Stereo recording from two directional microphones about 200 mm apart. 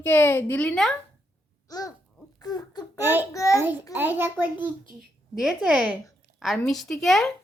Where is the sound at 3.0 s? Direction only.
10° right (ahead or behind).